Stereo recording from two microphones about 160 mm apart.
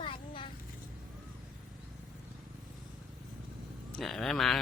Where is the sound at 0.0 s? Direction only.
30° left (ahead or behind).